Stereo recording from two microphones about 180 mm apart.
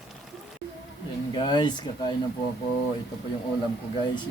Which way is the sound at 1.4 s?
25° left (ahead or behind).